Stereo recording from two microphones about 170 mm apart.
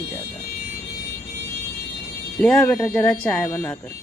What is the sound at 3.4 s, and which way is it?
Speech, 15° left (ahead or behind).